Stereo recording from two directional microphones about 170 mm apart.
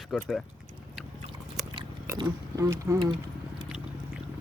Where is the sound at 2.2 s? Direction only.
20° right (ahead or behind).